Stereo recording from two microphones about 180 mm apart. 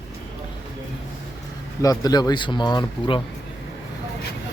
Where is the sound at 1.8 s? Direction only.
20° left (ahead or behind).